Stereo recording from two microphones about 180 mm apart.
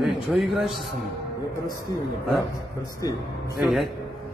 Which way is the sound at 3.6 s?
Centre (ahead or behind).